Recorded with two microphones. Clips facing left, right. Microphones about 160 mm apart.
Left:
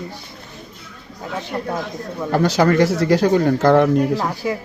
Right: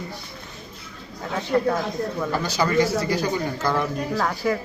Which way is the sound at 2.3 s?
65° left (ahead or behind).